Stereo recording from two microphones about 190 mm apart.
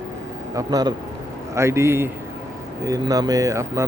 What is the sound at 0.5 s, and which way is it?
Speech, 20° right (ahead or behind).